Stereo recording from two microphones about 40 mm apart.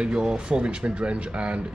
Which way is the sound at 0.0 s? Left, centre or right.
Right.